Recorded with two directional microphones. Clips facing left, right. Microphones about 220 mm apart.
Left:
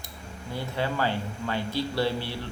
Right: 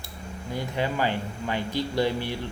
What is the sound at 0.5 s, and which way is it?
Speech, 15° right (ahead or behind).